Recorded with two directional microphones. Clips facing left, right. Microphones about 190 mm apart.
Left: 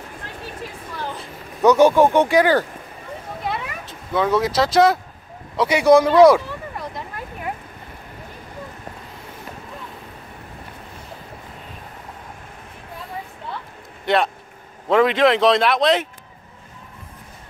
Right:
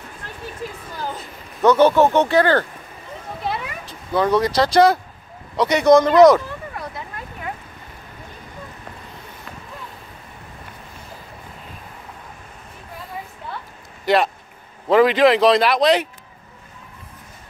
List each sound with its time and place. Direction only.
1.6 s speech: 15° left (ahead or behind)
4.1 s speech: centre (ahead or behind)
14.0 s speech: centre (ahead or behind)